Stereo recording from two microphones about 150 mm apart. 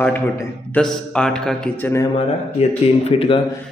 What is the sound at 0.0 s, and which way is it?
A man's voice, 15° left (ahead or behind).